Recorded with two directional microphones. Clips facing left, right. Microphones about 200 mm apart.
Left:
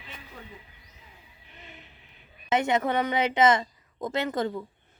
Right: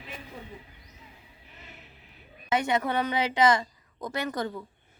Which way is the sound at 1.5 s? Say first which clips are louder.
Left 2 dB; 5° right (ahead or behind).